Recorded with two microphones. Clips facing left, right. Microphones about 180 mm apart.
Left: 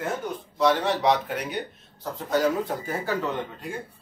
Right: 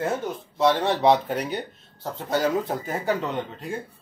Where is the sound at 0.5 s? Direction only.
30° right (ahead or behind).